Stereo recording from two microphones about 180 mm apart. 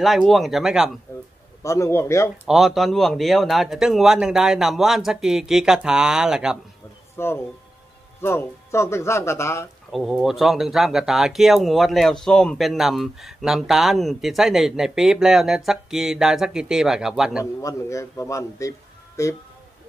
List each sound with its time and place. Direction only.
0.0 s speech: centre (ahead or behind)
1.6 s a man's voice: 15° left (ahead or behind)
2.4 s speech: centre (ahead or behind)
7.2 s a man's voice: 15° left (ahead or behind)
9.8 s speech: centre (ahead or behind)
17.6 s a man's voice: 15° left (ahead or behind)